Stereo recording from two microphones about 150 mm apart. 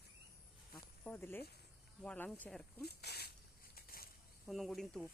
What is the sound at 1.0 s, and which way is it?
Speech, 10° left (ahead or behind).